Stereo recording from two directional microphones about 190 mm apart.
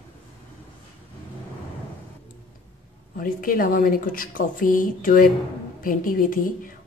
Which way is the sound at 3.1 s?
45° left (ahead or behind).